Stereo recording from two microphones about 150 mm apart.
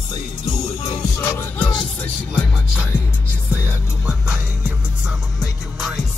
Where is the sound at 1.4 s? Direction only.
10° left (ahead or behind).